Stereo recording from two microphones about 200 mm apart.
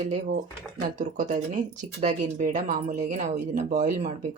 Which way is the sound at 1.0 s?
40° right (ahead or behind).